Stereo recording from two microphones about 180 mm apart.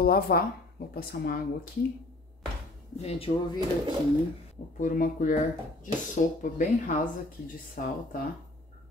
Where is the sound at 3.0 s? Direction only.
30° left (ahead or behind).